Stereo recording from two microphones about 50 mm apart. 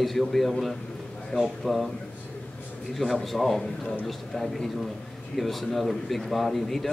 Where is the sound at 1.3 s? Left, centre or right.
Left.